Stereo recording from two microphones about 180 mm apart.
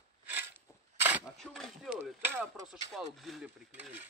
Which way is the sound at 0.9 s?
10° right (ahead or behind).